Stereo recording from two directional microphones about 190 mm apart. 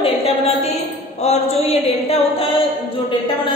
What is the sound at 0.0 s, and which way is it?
Music, 30° left (ahead or behind).